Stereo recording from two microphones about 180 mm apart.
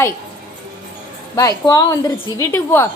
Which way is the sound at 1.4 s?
20° left (ahead or behind).